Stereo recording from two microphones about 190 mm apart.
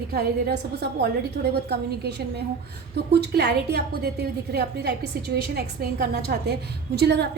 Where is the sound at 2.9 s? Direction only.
60° right (ahead or behind).